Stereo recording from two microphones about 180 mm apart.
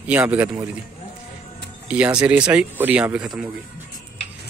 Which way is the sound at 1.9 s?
5° right (ahead or behind).